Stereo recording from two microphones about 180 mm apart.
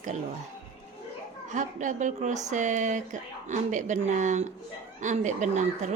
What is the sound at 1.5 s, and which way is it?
A woman's voice, 45° right (ahead or behind).